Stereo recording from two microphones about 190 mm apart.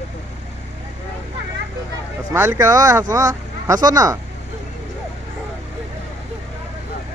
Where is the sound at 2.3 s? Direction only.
15° right (ahead or behind).